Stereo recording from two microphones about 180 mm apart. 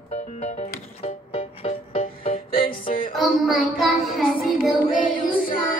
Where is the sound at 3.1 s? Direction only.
Centre (ahead or behind).